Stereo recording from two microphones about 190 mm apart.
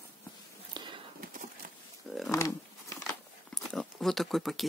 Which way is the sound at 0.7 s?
25° right (ahead or behind).